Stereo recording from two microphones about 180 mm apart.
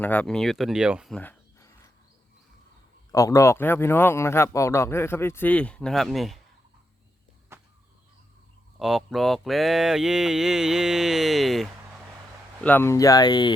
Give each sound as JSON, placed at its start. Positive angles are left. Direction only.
{"t": 0.0, "sound": "mantra", "side_deg": 5}
{"t": 1.2, "sound": "a sound", "side_deg": 15}
{"t": 3.1, "sound": "speech", "side_deg": 20}
{"t": 7.5, "sound": "a sound", "side_deg": -15}
{"t": 8.8, "sound": "mantra", "side_deg": 0}
{"t": 12.6, "sound": "speech", "side_deg": 10}